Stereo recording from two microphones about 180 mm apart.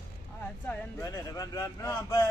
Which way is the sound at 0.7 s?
15° left (ahead or behind).